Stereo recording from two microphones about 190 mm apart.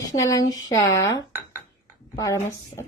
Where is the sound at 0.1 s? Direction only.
20° left (ahead or behind).